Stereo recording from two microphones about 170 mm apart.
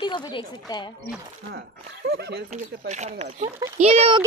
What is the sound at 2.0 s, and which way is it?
Speech, 80° right.